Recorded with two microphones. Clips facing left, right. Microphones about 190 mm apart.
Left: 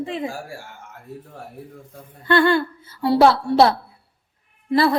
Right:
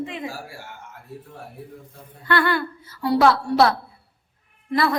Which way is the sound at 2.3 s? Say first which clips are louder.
Left 5 dB; 25° left (ahead or behind).